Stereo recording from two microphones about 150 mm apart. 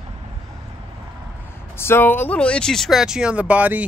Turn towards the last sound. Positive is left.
turn(degrees=-10)  # may be behind; listen again after turning